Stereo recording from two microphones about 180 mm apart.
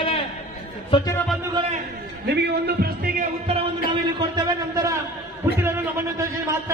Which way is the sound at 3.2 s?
35° right (ahead or behind).